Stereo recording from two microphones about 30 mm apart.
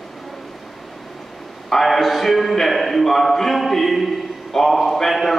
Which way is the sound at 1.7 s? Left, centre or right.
Centre.